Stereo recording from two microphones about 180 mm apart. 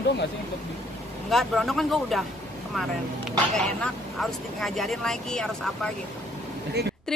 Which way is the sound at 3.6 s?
Centre (ahead or behind).